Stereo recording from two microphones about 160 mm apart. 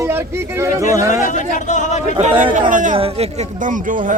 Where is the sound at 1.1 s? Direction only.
50° left (ahead or behind).